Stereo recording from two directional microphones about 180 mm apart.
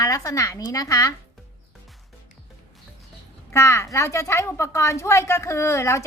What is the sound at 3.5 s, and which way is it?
A woman's voice, 15° left (ahead or behind).